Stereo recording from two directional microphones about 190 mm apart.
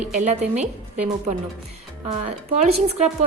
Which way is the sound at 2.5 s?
35° right (ahead or behind).